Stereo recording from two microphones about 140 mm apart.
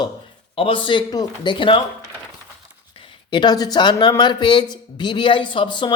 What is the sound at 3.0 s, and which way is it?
Speech, 35° left (ahead or behind).